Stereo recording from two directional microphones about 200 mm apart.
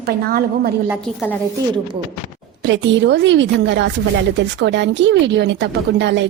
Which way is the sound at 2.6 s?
60° right (ahead or behind).